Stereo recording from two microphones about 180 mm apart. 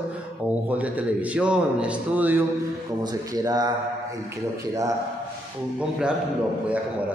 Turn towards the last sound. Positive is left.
turn(degrees=-5)  # may be behind; listen again after turning